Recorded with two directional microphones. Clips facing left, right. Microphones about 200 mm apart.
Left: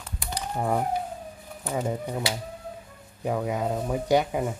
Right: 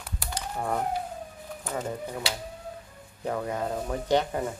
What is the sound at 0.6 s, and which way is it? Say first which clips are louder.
Speech: left 3 dB; 10° left (ahead or behind).